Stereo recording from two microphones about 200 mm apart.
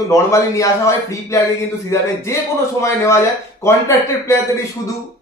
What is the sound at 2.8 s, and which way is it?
Speech, 15° left (ahead or behind).